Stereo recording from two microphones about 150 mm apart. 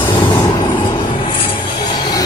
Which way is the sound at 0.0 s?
30° left (ahead or behind).